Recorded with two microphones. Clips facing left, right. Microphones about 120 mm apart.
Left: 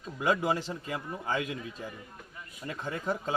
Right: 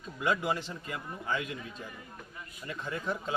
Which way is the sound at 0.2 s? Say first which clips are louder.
Left 3 dB; 30° left (ahead or behind).